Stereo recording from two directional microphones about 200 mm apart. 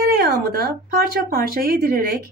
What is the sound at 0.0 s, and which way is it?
Speech, 50° right (ahead or behind).